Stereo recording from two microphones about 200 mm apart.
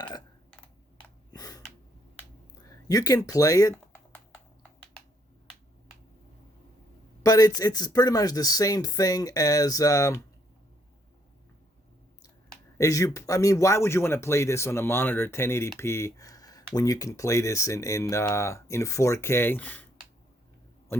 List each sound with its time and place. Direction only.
0.0 s typing: 20° left (ahead or behind)
1.3 s gasp: 20° left (ahead or behind)
2.6 s typing: 15° left (ahead or behind)
7.2 s speech: 15° left (ahead or behind)
12.7 s speech: 15° left (ahead or behind)